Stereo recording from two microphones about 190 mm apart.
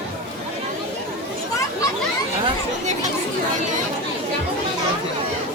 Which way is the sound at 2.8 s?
40° right (ahead or behind).